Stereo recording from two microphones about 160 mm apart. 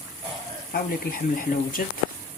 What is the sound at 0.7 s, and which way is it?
Speech, 60° left (ahead or behind).